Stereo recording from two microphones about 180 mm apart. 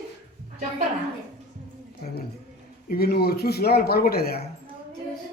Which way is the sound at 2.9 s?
60° left (ahead or behind).